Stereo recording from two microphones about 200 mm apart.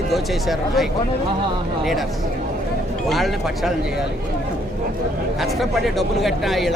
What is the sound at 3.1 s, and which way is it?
Speech, centre (ahead or behind).